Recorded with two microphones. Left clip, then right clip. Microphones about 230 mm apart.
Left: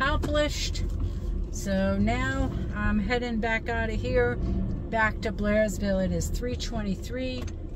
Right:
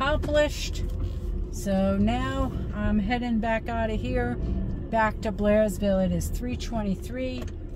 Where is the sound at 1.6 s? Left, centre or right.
Centre.